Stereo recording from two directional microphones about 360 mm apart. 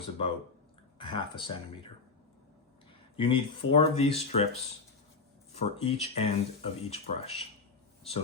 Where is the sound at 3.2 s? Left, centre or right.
Centre.